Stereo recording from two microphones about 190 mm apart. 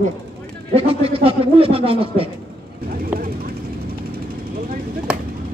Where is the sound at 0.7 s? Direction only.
30° right (ahead or behind).